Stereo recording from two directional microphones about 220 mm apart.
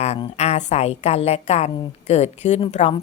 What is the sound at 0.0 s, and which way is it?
A woman's voice, 30° left (ahead or behind).